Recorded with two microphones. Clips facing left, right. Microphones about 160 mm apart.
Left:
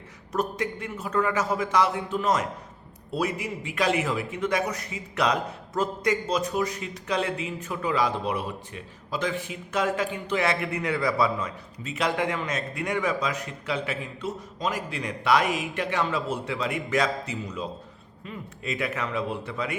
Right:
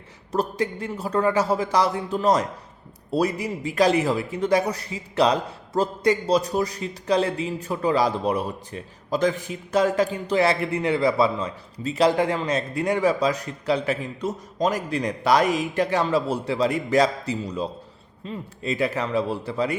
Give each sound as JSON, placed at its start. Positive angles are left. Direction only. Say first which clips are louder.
{"t": 0.3, "sound": "a man's voice", "louder": "right 3 dB", "side_deg": -30}